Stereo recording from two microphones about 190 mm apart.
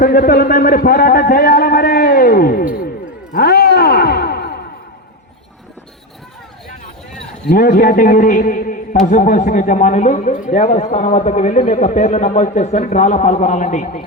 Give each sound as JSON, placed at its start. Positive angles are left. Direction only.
{"t": 0.0, "sound": "a man's voice", "side_deg": 45}
{"t": 3.3, "sound": "a sound", "side_deg": 55}
{"t": 7.4, "sound": "a man's voice", "side_deg": 45}